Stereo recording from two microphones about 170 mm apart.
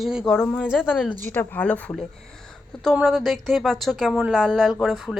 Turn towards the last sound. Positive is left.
turn(degrees=0)  # may be behind; listen again after turning